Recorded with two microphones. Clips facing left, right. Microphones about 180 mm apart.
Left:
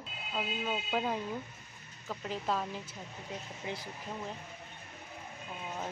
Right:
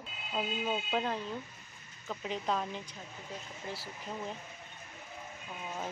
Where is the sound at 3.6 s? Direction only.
20° left (ahead or behind).